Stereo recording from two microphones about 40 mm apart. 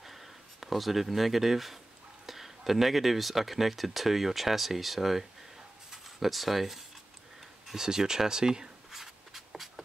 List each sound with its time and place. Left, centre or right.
0.0 s speech: centre
5.9 s a sound: centre
7.6 s speech: centre
8.9 s writing: centre